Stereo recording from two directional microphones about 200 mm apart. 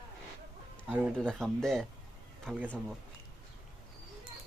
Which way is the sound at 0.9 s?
Centre (ahead or behind).